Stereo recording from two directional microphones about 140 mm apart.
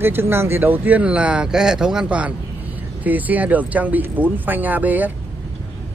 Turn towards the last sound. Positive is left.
turn(degrees=-10)  # may be behind; listen again after turning